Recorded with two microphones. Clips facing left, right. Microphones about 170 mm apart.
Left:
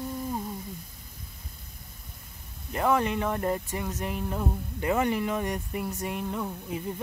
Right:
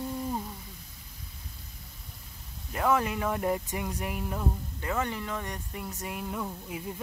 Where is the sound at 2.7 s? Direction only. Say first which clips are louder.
Left 2 dB; centre (ahead or behind).